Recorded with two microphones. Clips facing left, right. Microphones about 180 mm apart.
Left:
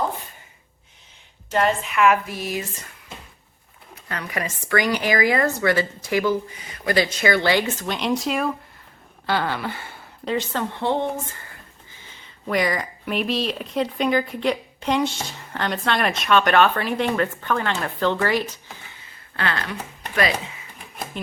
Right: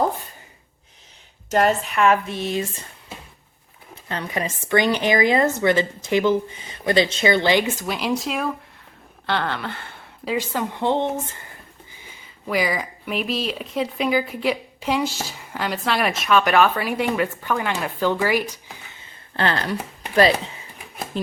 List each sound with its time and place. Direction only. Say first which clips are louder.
1.5 s speech: right 2 dB; 45° right (ahead or behind); by 2.9 s 30° right (ahead or behind)
4.1 s speech: right 2 dB; 25° right (ahead or behind); by 10.0 s 5° left (ahead or behind)
10.2 s speech: even; 10° right (ahead or behind)
12.0 s speech: left 1 dB; 5° right (ahead or behind)
19.4 s speech: right 4 dB; 30° right (ahead or behind)